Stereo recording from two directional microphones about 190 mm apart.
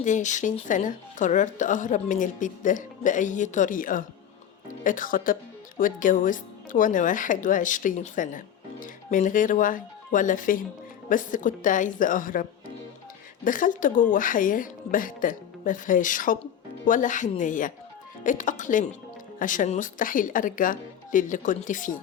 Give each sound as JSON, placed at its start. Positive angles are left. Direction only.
{"t": 0.0, "sound": "a woman's voice", "side_deg": 40}